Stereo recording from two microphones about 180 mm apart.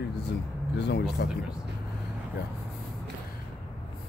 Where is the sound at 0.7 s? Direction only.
70° left (ahead or behind).